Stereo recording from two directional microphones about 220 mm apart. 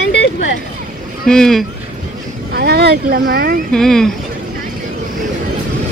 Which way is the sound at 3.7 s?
Centre (ahead or behind).